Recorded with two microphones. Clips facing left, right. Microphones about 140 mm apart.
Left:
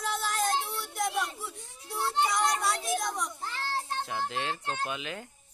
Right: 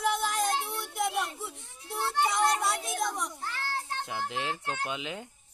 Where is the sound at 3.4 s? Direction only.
25° left (ahead or behind).